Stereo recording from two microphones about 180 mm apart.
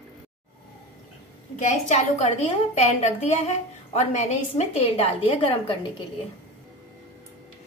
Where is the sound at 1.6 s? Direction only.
35° left (ahead or behind).